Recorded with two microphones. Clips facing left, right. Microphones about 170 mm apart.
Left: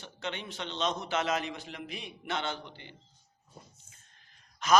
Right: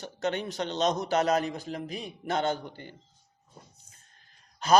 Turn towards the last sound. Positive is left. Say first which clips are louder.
# right 2 dB
turn(degrees=-30)  # may be behind; listen again after turning